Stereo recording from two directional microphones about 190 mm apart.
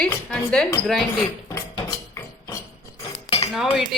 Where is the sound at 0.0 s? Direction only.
5° left (ahead or behind).